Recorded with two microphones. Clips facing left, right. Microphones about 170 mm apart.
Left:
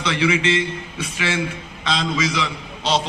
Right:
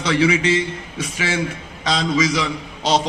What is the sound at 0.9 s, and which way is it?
Speech, 45° right (ahead or behind).